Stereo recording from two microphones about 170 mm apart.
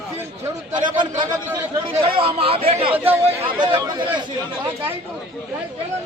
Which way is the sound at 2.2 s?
35° right (ahead or behind).